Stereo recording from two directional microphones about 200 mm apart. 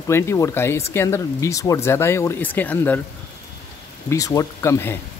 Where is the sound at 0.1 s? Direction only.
10° left (ahead or behind).